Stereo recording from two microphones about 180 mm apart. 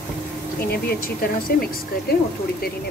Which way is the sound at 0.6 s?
55° left (ahead or behind).